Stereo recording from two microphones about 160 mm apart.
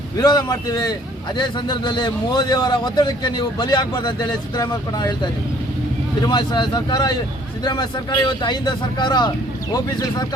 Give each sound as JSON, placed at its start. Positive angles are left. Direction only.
{"t": 0.2, "sound": "a man's voice", "side_deg": 25}